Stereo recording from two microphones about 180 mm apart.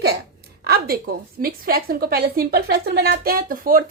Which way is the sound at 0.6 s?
60° right (ahead or behind).